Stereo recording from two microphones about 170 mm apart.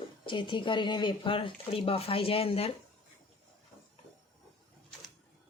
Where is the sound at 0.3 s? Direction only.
30° left (ahead or behind).